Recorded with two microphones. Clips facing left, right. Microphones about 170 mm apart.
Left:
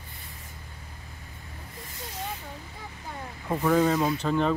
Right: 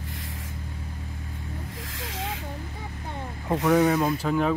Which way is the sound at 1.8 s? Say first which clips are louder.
Even; 90° right.